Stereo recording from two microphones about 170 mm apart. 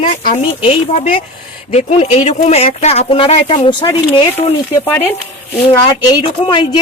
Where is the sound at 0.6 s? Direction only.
35° left (ahead or behind).